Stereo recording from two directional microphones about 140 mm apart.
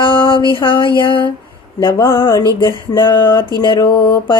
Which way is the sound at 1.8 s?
25° left (ahead or behind).